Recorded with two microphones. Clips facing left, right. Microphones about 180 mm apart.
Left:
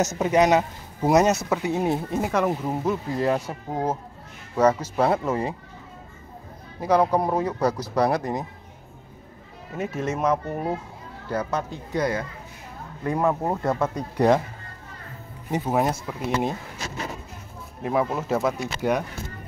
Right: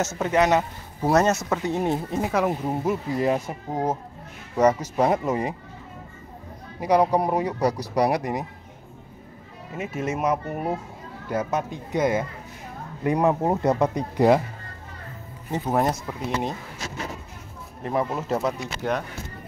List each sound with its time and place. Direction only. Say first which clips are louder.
0.0 s speech: left 2 dB; 15° left (ahead or behind); by 5.5 s 15° right (ahead or behind)
6.8 s speech: even; 15° right (ahead or behind)
9.8 s speech: left 1 dB; 5° right (ahead or behind)
15.5 s speech: even; 5° left (ahead or behind)
17.8 s speech: left 1 dB; 5° left (ahead or behind)